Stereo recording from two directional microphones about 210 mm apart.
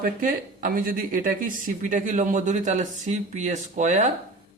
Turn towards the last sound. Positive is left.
turn(degrees=-35)  # may be behind; listen again after turning